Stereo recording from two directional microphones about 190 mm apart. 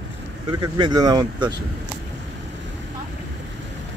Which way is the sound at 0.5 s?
20° right (ahead or behind).